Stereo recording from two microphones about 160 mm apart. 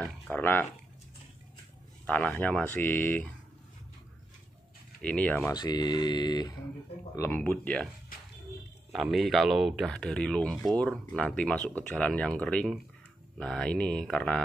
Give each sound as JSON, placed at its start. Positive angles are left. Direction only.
{"t": 0.0, "sound": "a sound", "side_deg": 10}
{"t": 2.0, "sound": "speech", "side_deg": 10}
{"t": 5.0, "sound": "speech", "side_deg": 10}
{"t": 5.5, "sound": "speech", "side_deg": 25}
{"t": 7.2, "sound": "speech", "side_deg": 15}
{"t": 9.0, "sound": "speech", "side_deg": 0}